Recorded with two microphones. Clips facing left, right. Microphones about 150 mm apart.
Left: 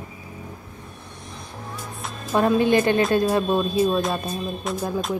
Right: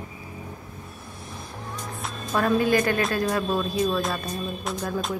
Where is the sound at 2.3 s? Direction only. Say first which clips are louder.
Left 3 dB; 25° left (ahead or behind).